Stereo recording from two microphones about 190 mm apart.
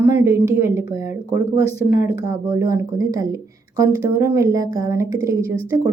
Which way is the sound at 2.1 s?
15° right (ahead or behind).